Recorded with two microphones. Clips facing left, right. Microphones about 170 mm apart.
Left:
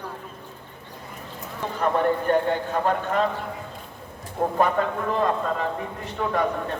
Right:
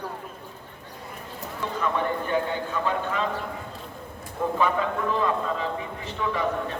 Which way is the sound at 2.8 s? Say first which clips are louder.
Left 4 dB; 50° left (ahead or behind).